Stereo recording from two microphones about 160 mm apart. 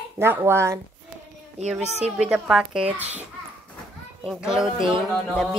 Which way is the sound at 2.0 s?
10° right (ahead or behind).